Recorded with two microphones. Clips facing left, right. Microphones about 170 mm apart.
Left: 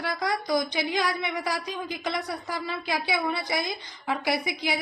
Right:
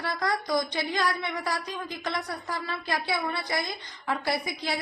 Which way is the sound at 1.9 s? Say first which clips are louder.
Left 1 dB; 20° left (ahead or behind).